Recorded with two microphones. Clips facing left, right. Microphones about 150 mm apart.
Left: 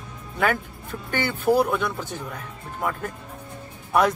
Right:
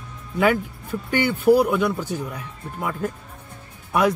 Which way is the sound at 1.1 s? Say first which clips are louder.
Right 5 dB; 10° right (ahead or behind).